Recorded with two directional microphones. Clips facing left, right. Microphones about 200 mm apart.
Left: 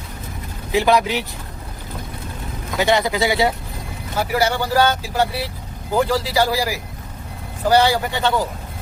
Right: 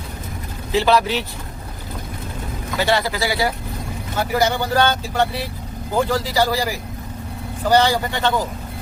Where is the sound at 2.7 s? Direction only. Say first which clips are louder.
Left 2 dB; 15° left (ahead or behind).